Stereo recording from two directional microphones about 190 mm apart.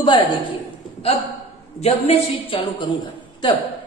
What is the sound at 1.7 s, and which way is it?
A woman's voice, 30° left (ahead or behind).